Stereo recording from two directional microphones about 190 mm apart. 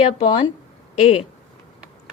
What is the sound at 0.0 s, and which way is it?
Speech, 30° left (ahead or behind).